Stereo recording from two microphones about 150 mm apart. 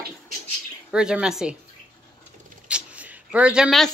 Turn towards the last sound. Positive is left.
turn(degrees=0)  # may be behind; listen again after turning